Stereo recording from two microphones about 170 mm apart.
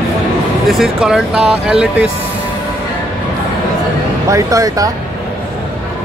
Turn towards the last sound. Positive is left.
turn(degrees=-20)  # may be behind; listen again after turning